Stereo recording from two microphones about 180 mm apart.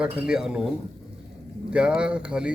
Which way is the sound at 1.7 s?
5° right (ahead or behind).